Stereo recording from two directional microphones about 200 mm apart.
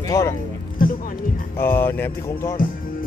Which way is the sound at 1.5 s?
10° left (ahead or behind).